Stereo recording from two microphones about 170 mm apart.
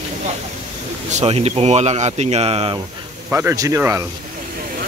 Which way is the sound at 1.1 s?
40° right (ahead or behind).